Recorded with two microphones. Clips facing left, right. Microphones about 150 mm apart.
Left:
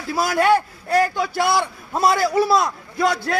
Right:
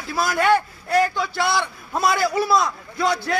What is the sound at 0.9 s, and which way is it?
Speech, 45° left (ahead or behind).